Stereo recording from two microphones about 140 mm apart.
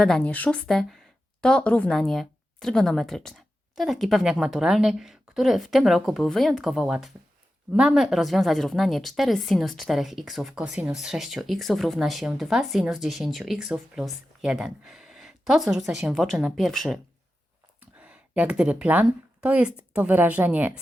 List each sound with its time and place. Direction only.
0.0 s a woman's voice: 10° left (ahead or behind)
17.7 s speech: 10° right (ahead or behind)